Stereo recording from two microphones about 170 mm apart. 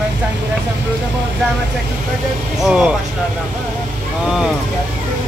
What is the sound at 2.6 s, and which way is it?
Speech, 5° right (ahead or behind).